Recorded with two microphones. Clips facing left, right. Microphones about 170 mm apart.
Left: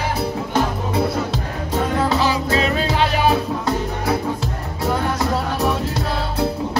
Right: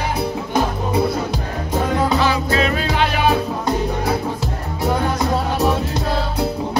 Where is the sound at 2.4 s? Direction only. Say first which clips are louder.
Even; 25° left (ahead or behind).